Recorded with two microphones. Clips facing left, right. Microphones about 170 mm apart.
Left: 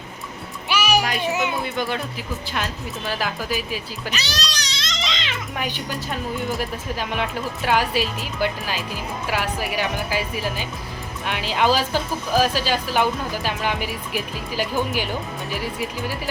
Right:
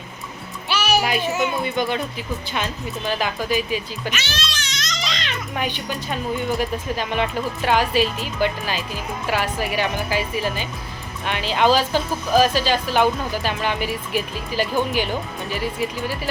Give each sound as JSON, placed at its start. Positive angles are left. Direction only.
{"t": 0.7, "sound": "music", "side_deg": 10}
{"t": 1.6, "sound": "speech", "side_deg": 0}
{"t": 3.1, "sound": "speech", "side_deg": 5}
{"t": 4.1, "sound": "a sound", "side_deg": 35}
{"t": 5.2, "sound": "speech", "side_deg": 5}